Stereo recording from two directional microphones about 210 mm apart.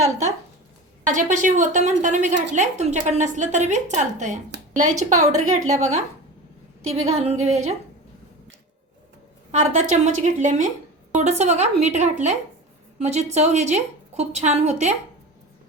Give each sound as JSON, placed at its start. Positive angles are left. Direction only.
{"t": 0.0, "sound": "a sound", "side_deg": -35}
{"t": 1.0, "sound": "a woman's voice", "side_deg": -35}
{"t": 7.1, "sound": "a woman's voice", "side_deg": -30}
{"t": 9.5, "sound": "a woman's voice", "side_deg": -35}